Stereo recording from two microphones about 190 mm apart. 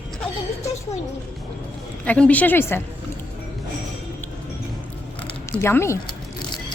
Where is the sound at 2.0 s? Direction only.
5° left (ahead or behind).